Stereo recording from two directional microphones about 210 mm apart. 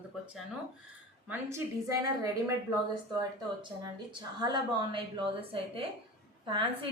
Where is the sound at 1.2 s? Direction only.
15° right (ahead or behind).